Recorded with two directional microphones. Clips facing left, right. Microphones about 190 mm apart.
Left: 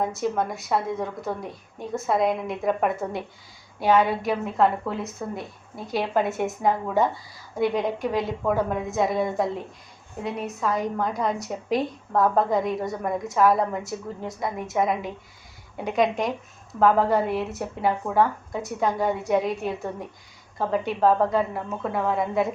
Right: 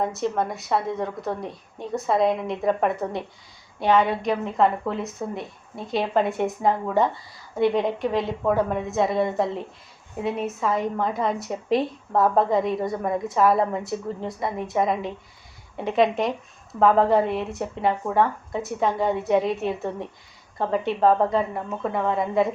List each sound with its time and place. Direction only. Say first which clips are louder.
0.0 s a woman's voice: right 1 dB; centre (ahead or behind)